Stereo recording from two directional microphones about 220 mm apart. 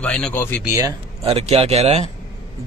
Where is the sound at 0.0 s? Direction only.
5° left (ahead or behind).